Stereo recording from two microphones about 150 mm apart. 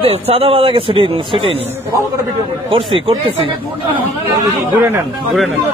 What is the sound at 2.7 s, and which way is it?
Speech, 35° right (ahead or behind).